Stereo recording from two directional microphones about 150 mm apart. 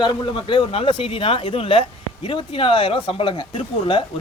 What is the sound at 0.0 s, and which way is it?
Speech, 35° left (ahead or behind).